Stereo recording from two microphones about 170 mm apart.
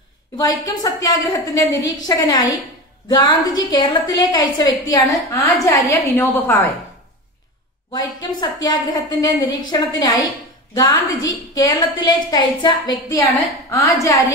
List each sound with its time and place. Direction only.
0.4 s a woman's voice: 20° left (ahead or behind)
7.9 s a woman's voice: 25° left (ahead or behind)
14.0 s a woman's voice: 20° left (ahead or behind)